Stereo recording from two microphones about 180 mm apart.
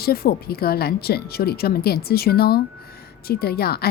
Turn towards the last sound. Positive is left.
turn(degrees=60)  # may be behind; listen again after turning